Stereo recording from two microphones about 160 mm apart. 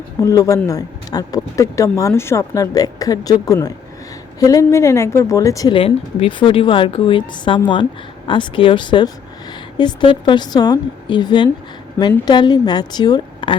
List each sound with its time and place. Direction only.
0.2 s speech: 20° left (ahead or behind)
5.7 s speech: 35° left (ahead or behind)